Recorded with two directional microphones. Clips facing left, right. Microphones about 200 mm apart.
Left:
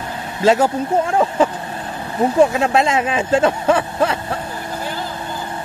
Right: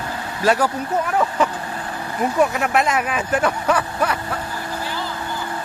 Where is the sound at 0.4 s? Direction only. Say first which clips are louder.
Left 4 dB; 25° left (ahead or behind).